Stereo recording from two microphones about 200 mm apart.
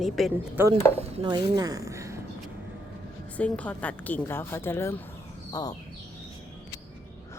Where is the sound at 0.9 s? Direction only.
30° right (ahead or behind); by 2.2 s 15° right (ahead or behind).